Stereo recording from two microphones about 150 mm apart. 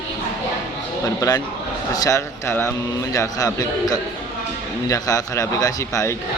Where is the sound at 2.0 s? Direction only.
20° left (ahead or behind).